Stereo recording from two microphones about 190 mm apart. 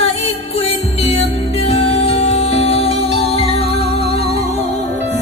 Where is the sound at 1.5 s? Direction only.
30° left (ahead or behind).